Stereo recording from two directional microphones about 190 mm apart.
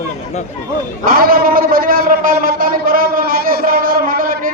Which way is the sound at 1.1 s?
50° right (ahead or behind).